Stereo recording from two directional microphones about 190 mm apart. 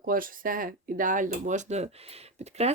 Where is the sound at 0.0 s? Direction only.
50° right (ahead or behind).